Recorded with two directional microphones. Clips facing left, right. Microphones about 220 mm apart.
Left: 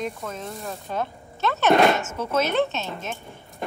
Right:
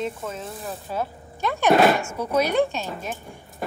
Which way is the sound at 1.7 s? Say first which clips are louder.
Right 1 dB; 5° right (ahead or behind).